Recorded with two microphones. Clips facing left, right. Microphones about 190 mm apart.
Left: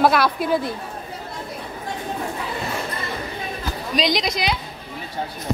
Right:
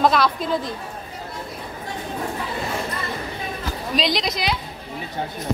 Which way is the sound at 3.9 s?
Centre (ahead or behind).